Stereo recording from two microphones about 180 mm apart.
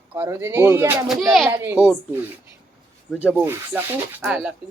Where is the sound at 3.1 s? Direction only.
5° right (ahead or behind).